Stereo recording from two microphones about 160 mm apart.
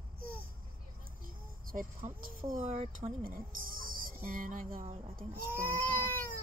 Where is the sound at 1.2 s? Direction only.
60° right (ahead or behind).